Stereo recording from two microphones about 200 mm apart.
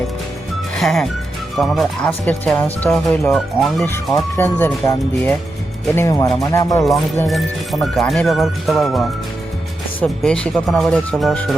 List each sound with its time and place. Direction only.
0.8 s speech: centre (ahead or behind); by 6.8 s 15° left (ahead or behind)
7.3 s speech: centre (ahead or behind)